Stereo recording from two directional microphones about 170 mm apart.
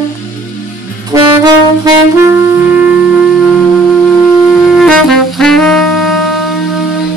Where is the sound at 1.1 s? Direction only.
15° right (ahead or behind).